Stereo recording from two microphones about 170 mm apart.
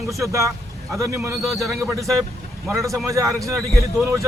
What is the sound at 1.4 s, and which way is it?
Speech, centre (ahead or behind).